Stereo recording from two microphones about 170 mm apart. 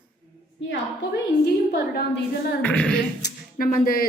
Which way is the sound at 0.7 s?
85° left.